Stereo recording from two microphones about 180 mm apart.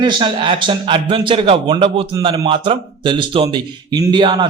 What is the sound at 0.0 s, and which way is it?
A man's voice, 25° right (ahead or behind).